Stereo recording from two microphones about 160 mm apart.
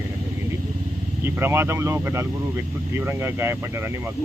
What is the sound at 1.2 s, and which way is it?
Speech, 15° right (ahead or behind).